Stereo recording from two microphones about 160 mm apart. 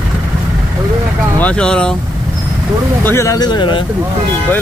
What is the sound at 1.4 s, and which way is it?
Speech, 5° left (ahead or behind).